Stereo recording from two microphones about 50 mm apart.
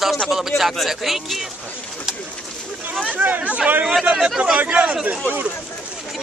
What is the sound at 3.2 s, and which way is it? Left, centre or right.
A man's voice, right.